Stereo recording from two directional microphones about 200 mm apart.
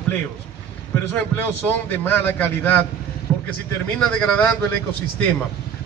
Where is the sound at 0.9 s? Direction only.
10° left (ahead or behind).